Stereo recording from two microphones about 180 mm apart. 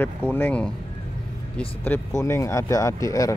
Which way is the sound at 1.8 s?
15° left (ahead or behind).